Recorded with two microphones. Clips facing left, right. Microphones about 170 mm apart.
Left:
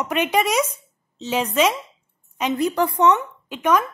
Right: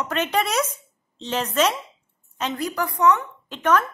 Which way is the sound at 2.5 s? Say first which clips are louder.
Left 8 dB; 25° left (ahead or behind).